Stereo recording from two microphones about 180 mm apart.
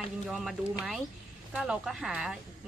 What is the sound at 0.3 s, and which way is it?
Speech, centre (ahead or behind).